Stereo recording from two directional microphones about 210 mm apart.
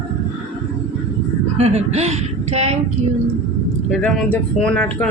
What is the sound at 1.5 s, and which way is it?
Speech, 30° right (ahead or behind).